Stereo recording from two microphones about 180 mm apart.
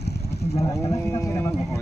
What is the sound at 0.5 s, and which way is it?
Speech, 25° left (ahead or behind).